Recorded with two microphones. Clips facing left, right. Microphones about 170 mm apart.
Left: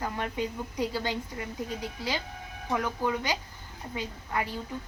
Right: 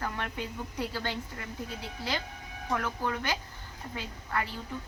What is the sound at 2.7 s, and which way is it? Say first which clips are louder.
A woman's voice: left 3 dB; 15° left (ahead or behind).